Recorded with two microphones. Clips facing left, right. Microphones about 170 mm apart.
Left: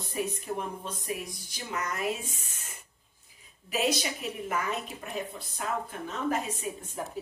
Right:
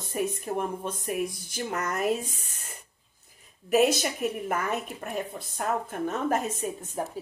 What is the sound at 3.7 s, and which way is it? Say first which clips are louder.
A woman's voice: right 7 dB; 50° right (ahead or behind).